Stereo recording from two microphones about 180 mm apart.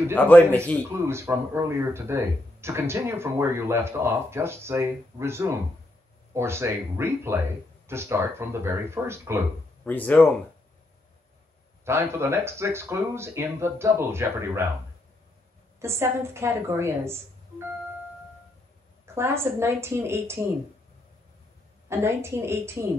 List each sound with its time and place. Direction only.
0.1 s a man's voice: 10° left (ahead or behind)
1.0 s speech: 15° right (ahead or behind)
9.8 s a man's voice: 10° left (ahead or behind)
11.8 s speech: 15° right (ahead or behind)
15.8 s speech: 15° right (ahead or behind)
19.1 s speech: 15° right (ahead or behind)
21.8 s speech: 15° right (ahead or behind)